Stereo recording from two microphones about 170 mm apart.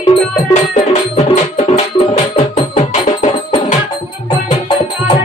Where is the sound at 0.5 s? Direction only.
40° left (ahead or behind).